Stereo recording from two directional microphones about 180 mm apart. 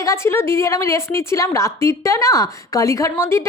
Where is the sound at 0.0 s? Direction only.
15° left (ahead or behind).